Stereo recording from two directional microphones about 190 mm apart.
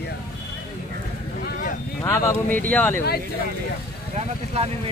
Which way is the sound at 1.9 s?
15° left (ahead or behind).